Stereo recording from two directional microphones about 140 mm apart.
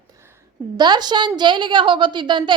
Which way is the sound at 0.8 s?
30° right (ahead or behind).